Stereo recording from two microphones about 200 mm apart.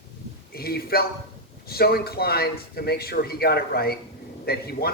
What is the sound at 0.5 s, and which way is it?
A man's voice, 50° left (ahead or behind).